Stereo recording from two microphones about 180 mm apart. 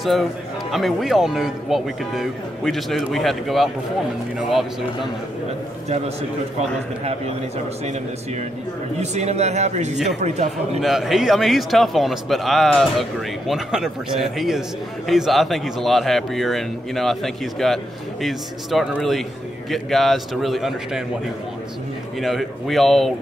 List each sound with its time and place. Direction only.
0.0 s speech: centre (ahead or behind)
7.1 s a man's voice: 35° right (ahead or behind)
9.0 s a man's voice: 40° right (ahead or behind)
10.8 s speech: centre (ahead or behind)
22.2 s speech: centre (ahead or behind)